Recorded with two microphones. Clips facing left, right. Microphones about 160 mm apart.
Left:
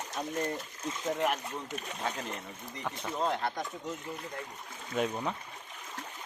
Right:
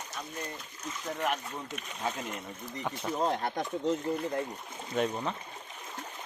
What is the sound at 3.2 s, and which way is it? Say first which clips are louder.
Speech: right 1 dB; 40° right (ahead or behind).